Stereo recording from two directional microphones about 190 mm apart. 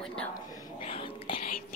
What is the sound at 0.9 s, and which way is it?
Speech, 30° left (ahead or behind).